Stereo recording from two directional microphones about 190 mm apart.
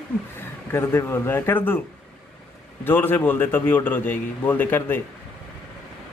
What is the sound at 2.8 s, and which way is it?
A man's voice, 10° left (ahead or behind).